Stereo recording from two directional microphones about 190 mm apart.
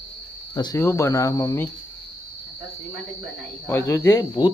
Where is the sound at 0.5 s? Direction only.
20° left (ahead or behind).